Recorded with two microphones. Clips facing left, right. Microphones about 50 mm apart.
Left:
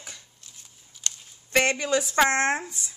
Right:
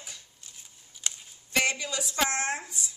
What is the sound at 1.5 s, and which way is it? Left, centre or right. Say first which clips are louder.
Speech: left 6 dB; left.